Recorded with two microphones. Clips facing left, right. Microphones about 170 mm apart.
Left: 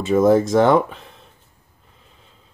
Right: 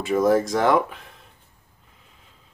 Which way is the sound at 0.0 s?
25° left (ahead or behind).